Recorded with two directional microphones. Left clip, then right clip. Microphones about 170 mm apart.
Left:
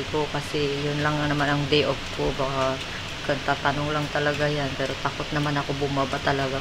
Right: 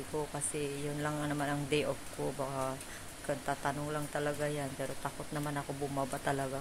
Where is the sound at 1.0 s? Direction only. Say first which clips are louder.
Left 11 dB; 25° right (ahead or behind).